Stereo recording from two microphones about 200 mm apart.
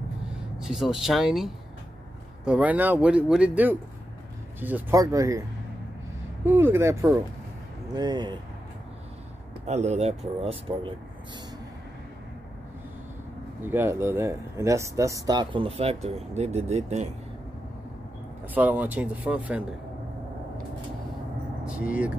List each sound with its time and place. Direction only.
0.6 s speech: centre (ahead or behind)
6.4 s speech: 10° right (ahead or behind)
9.7 s speech: 35° right (ahead or behind)
13.6 s speech: 10° right (ahead or behind); by 17.1 s 35° right (ahead or behind)
18.5 s speech: 10° right (ahead or behind)
21.6 s speech: 5° right (ahead or behind)